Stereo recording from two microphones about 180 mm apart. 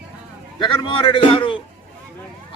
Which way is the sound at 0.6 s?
25° left (ahead or behind).